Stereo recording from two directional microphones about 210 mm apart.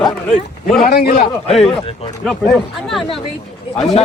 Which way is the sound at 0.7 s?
45° left (ahead or behind).